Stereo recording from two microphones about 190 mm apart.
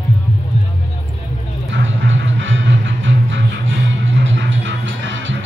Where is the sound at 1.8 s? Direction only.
85° right.